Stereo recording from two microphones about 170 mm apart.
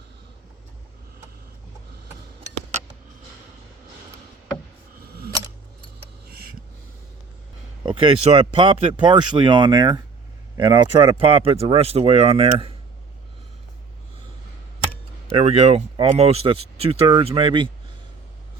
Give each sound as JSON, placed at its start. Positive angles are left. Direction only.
{"t": 6.2, "sound": "a sound", "side_deg": -65}
{"t": 7.9, "sound": "speech", "side_deg": -30}
{"t": 15.3, "sound": "speech", "side_deg": -35}